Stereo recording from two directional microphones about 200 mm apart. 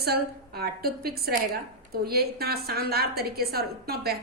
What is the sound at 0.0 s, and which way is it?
A woman's voice, 50° right (ahead or behind).